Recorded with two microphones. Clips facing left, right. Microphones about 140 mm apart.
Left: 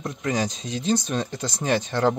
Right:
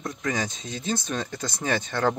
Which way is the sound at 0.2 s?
30° left (ahead or behind).